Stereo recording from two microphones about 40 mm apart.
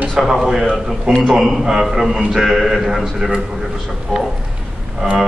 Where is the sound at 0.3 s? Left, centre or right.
Centre.